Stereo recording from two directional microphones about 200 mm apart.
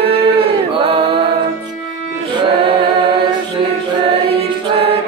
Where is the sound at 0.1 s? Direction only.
30° right (ahead or behind).